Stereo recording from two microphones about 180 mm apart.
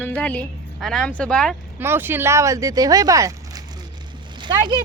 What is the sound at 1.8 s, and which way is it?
Speech, 10° right (ahead or behind).